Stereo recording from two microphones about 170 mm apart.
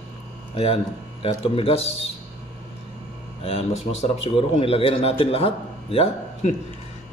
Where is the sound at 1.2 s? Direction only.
35° left (ahead or behind).